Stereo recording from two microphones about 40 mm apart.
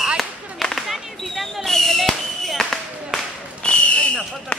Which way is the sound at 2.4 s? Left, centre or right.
Centre.